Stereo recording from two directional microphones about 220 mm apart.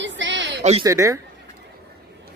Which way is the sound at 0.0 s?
55° right (ahead or behind).